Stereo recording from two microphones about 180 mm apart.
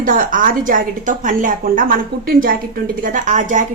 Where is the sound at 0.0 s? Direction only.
50° right (ahead or behind).